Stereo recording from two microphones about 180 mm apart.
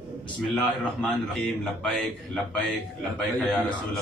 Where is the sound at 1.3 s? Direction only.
Centre (ahead or behind).